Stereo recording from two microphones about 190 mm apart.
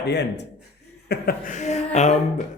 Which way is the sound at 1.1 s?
50° left (ahead or behind).